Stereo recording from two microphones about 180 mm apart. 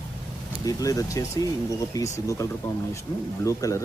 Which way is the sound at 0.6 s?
20° left (ahead or behind).